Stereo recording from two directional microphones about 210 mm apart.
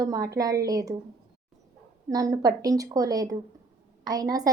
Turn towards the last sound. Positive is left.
turn(degrees=-15)  # may be behind; listen again after turning